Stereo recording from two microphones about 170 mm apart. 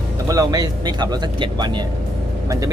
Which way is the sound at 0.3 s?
20° right (ahead or behind).